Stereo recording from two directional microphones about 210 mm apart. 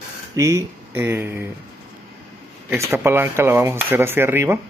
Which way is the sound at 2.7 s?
10° right (ahead or behind).